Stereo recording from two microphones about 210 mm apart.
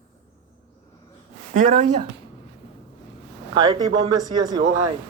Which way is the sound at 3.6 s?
20° right (ahead or behind).